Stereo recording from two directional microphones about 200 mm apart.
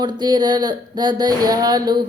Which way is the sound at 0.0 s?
20° right (ahead or behind).